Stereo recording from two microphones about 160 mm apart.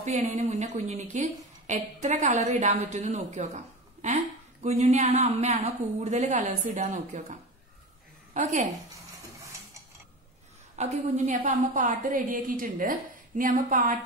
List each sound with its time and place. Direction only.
0.0 s a woman's voice: 50° right (ahead or behind)
10.8 s a woman's voice: 45° right (ahead or behind)
11.4 s a woman's voice: 55° right (ahead or behind)